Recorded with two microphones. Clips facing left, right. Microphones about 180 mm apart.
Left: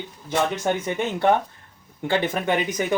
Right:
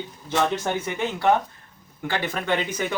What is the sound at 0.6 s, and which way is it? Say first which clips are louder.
Speech: left 2 dB; 20° left (ahead or behind).